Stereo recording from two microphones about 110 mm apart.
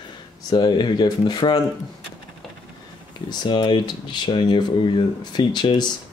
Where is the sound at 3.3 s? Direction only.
40° left (ahead or behind).